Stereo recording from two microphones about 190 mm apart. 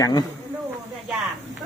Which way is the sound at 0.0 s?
20° left (ahead or behind).